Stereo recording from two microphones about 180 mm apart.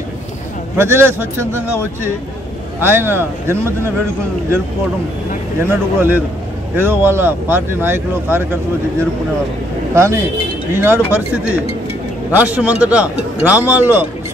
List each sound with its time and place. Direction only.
0.7 s speech: 15° right (ahead or behind)
2.8 s speech: 15° right (ahead or behind)
5.9 s speech: 10° right (ahead or behind)
9.9 s speech: 15° right (ahead or behind)